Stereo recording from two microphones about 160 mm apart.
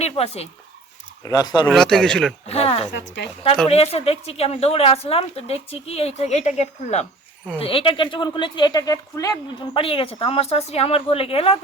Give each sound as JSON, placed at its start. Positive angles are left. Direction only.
{"t": 0.0, "sound": "speech", "side_deg": 40}
{"t": 1.2, "sound": "speech", "side_deg": 25}
{"t": 1.6, "sound": "speech", "side_deg": 5}
{"t": 2.5, "sound": "speech", "side_deg": 40}
{"t": 7.6, "sound": "speech", "side_deg": 35}